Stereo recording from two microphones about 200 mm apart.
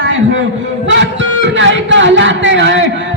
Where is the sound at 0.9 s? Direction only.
65° right (ahead or behind).